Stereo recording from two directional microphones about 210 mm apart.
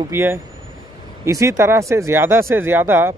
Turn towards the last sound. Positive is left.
turn(degrees=-10)  # may be behind; listen again after turning